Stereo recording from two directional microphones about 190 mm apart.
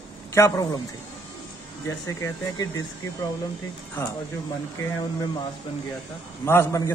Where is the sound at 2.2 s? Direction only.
15° left (ahead or behind).